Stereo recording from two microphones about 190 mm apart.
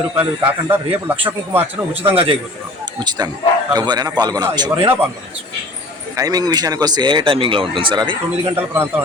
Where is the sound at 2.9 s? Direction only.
20° right (ahead or behind).